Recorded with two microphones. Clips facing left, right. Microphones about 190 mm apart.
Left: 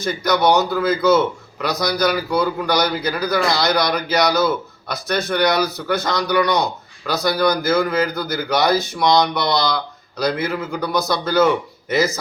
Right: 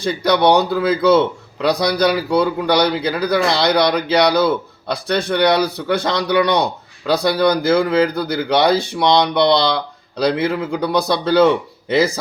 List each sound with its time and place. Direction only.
0.0 s a man's voice: 30° right (ahead or behind)